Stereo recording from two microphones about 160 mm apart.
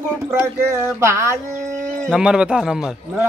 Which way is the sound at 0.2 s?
15° right (ahead or behind).